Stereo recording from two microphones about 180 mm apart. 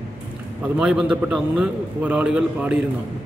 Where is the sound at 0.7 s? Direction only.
5° right (ahead or behind).